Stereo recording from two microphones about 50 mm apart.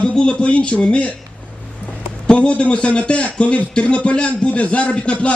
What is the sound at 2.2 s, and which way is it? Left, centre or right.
A man's voice, left.